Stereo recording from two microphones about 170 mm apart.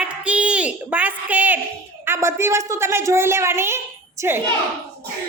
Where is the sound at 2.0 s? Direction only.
15° right (ahead or behind).